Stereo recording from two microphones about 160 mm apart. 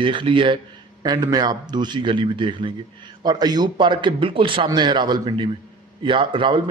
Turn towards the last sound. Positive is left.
turn(degrees=-30)  # may be behind; listen again after turning